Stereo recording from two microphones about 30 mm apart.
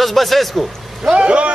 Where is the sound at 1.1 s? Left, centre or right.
Right.